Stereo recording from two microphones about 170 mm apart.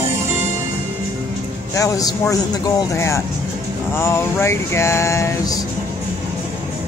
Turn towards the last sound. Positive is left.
turn(degrees=20)  # may be behind; listen again after turning